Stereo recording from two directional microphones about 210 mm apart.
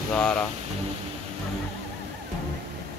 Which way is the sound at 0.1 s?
5° left (ahead or behind).